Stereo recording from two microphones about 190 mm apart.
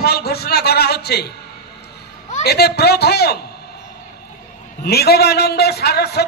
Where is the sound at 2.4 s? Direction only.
60° left (ahead or behind).